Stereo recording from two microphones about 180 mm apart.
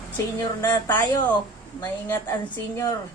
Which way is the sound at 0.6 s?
10° left (ahead or behind).